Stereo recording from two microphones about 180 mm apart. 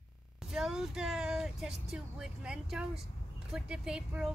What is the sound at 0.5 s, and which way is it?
Speech, 5° right (ahead or behind).